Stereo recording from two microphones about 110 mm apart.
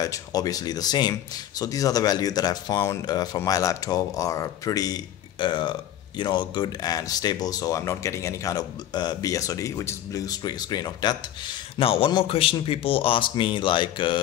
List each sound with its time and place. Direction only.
0.0 s speech: 35° left (ahead or behind)
5.4 s speech: 45° left (ahead or behind)
11.8 s a man's voice: 60° left (ahead or behind)